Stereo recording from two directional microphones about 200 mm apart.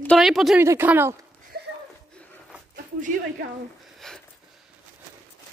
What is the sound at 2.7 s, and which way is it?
Speech, 45° right (ahead or behind).